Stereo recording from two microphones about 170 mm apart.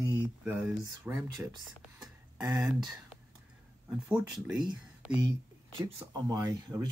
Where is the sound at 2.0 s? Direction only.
20° right (ahead or behind).